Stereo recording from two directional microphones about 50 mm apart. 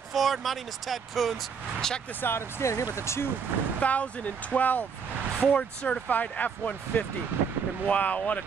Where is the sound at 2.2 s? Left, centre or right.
Left.